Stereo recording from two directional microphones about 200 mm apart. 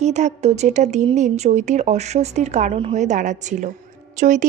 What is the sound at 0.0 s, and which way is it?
A woman's voice, 35° right (ahead or behind).